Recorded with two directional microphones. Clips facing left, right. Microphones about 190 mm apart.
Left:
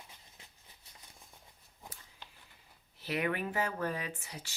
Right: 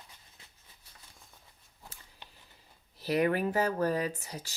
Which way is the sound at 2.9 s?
40° right (ahead or behind).